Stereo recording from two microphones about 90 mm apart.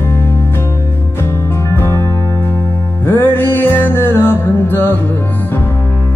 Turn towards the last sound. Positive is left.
turn(degrees=20)  # may be behind; listen again after turning